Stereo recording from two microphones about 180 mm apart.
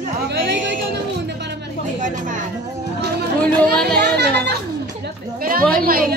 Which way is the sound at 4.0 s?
65° right (ahead or behind).